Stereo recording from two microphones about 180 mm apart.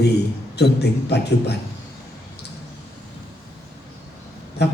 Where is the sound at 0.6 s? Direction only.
65° left (ahead or behind).